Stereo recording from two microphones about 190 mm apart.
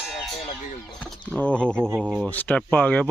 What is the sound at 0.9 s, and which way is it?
Speech, 5° left (ahead or behind).